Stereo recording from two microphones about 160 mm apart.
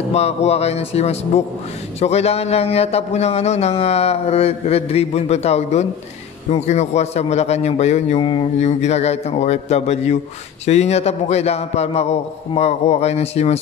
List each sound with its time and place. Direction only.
0.1 s a man's voice: 40° left (ahead or behind)
8.5 s a man's voice: 45° left (ahead or behind)